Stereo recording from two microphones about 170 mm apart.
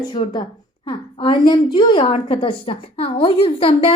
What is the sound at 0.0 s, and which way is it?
A woman's voice, 30° left (ahead or behind).